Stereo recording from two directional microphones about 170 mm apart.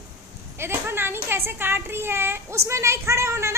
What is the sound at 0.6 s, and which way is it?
A woman's voice, 15° right (ahead or behind).